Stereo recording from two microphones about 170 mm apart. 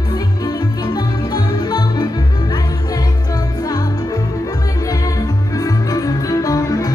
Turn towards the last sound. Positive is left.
turn(degrees=20)  # may be behind; listen again after turning